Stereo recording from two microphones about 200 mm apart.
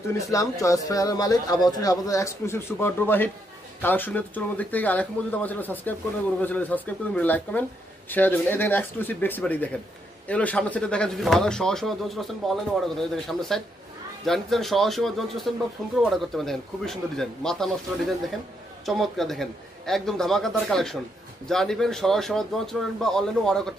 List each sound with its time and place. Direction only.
0.1 s speech: 15° left (ahead or behind)
18.9 s speech: centre (ahead or behind)